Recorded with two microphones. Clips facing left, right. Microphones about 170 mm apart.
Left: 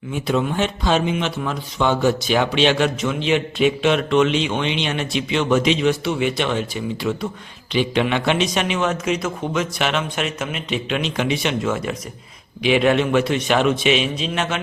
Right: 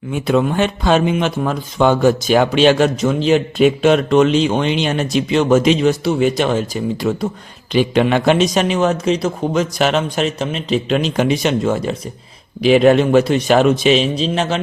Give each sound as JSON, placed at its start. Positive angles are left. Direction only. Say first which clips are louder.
{"t": 0.1, "sound": "speech", "louder": "right 5 dB", "side_deg": -55}